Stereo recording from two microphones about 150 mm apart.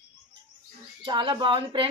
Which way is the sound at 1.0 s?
30° right (ahead or behind).